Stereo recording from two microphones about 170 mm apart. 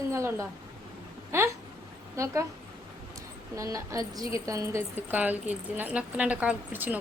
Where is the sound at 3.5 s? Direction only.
20° right (ahead or behind).